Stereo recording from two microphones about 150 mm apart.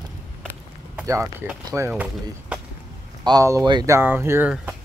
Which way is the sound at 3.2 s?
25° right (ahead or behind).